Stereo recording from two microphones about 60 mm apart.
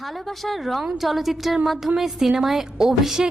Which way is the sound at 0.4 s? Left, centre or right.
Centre.